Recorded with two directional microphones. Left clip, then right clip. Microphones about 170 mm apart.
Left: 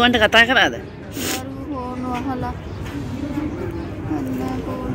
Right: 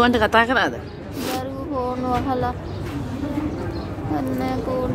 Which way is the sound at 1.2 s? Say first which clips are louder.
Even; centre (ahead or behind).